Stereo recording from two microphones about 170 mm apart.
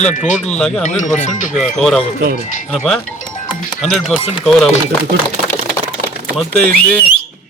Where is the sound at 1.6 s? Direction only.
5° left (ahead or behind).